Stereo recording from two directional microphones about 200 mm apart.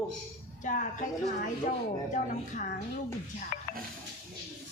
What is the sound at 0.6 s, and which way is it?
Speech, 40° left (ahead or behind).